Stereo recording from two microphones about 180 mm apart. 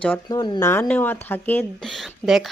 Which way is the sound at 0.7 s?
10° left (ahead or behind).